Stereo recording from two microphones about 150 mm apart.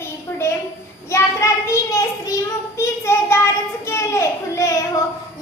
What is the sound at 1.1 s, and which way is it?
Child singing, 20° left (ahead or behind).